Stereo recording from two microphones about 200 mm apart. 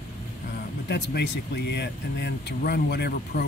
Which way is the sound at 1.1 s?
55° left (ahead or behind).